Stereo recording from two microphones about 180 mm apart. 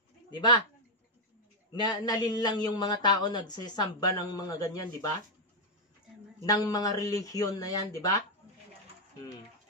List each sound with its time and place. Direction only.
0.3 s speech: 25° left (ahead or behind)
1.8 s speech: 25° left (ahead or behind)
6.4 s speech: 20° left (ahead or behind)